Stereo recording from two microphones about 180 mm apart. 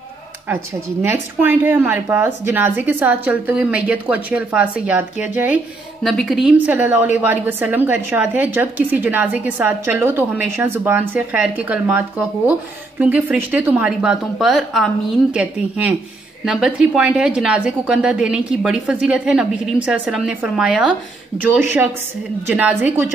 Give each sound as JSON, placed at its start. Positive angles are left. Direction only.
{"t": 1.0, "sound": "a woman's voice", "side_deg": -10}
{"t": 22.5, "sound": "a woman's voice", "side_deg": -10}